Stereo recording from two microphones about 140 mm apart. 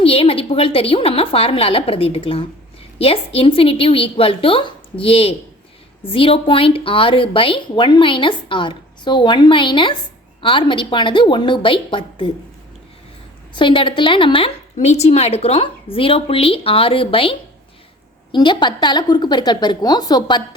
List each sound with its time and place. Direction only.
0.0 s a woman's voice: 45° left (ahead or behind)
13.6 s a woman's voice: 35° left (ahead or behind)
14.8 s a woman's voice: 50° left (ahead or behind); by 20.6 s 30° left (ahead or behind)